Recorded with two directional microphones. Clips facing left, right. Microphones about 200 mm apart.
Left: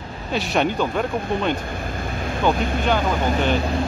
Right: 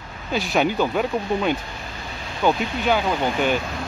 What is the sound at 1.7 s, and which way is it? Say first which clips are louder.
Vehicle: left 7 dB; 50° left (ahead or behind).